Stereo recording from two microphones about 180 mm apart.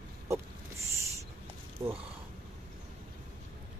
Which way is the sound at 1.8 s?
25° right (ahead or behind).